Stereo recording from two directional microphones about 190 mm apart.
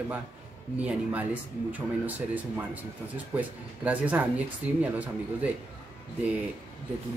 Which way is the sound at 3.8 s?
10° right (ahead or behind).